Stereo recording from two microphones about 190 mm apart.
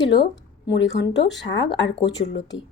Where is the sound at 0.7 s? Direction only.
65° left (ahead or behind).